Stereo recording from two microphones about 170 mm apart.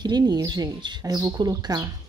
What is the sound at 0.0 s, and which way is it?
Speech, 25° right (ahead or behind).